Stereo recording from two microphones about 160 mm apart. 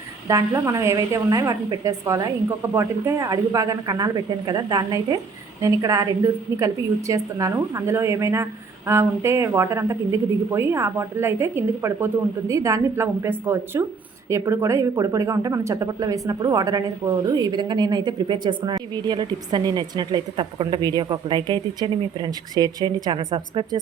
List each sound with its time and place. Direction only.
0.3 s a woman's voice: 20° right (ahead or behind)